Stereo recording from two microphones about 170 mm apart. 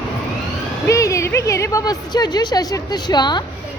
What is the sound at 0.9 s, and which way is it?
A woman's voice, 20° left (ahead or behind).